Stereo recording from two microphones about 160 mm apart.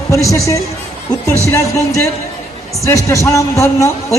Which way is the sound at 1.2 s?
20° left (ahead or behind).